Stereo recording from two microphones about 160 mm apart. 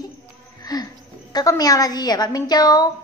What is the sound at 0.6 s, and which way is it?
Music, 25° left (ahead or behind).